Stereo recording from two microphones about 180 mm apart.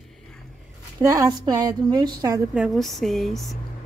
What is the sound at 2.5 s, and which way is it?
A woman's voice, centre (ahead or behind).